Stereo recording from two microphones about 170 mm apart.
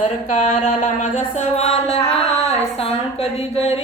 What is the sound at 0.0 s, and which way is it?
Music, 45° left (ahead or behind).